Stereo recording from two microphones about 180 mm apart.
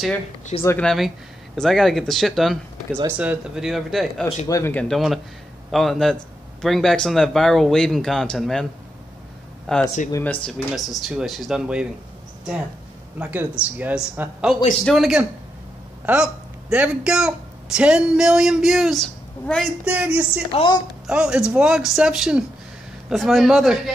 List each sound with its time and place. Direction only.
0.6 s speech: 10° left (ahead or behind)
4.5 s speech: 15° left (ahead or behind)
4.8 s speech: centre (ahead or behind)
9.7 s speech: 5° left (ahead or behind)
13.2 s speech: 10° right (ahead or behind)
20.5 s a woman's voice: 25° left (ahead or behind)
21.1 s speech: 5° right (ahead or behind)